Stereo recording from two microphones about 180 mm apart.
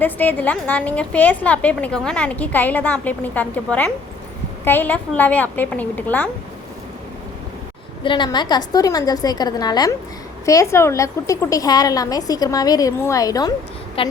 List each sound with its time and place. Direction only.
0.0 s a woman's voice: 10° left (ahead or behind)
8.0 s a woman's voice: 25° left (ahead or behind)
14.0 s speech: 30° left (ahead or behind)